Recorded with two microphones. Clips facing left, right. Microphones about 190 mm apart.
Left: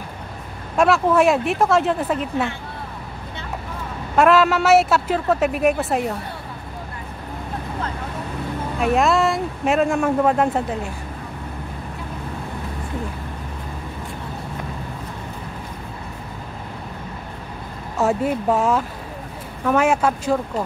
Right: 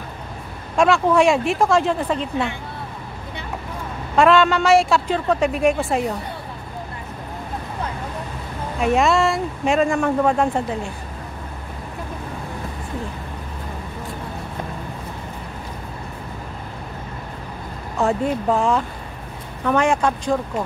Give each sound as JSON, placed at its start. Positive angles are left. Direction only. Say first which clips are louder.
{"t": 0.7, "sound": "speech", "louder": "even", "side_deg": 5}
{"t": 4.2, "sound": "speech", "louder": "even", "side_deg": 5}
{"t": 8.7, "sound": "speech", "louder": "right 1 dB", "side_deg": 0}
{"t": 17.9, "sound": "speech", "louder": "even", "side_deg": 5}